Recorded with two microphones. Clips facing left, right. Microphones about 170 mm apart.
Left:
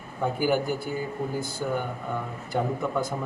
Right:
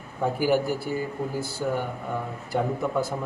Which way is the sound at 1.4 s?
30° right (ahead or behind).